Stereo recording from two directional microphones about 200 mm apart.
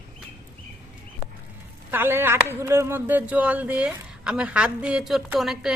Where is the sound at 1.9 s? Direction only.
10° right (ahead or behind).